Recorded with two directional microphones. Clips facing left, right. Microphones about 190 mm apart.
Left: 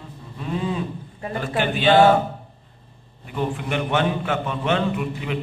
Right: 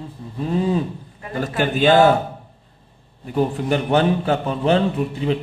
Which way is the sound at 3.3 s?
40° right (ahead or behind).